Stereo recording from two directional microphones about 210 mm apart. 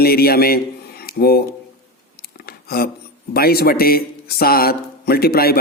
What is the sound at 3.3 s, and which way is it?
A man's voice, 45° left (ahead or behind).